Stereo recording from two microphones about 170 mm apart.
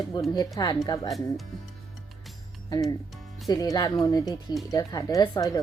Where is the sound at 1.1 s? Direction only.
Centre (ahead or behind).